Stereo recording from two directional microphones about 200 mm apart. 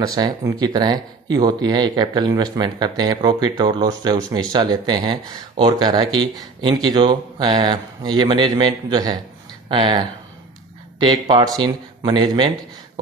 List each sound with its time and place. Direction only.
0.0 s speech: 20° right (ahead or behind)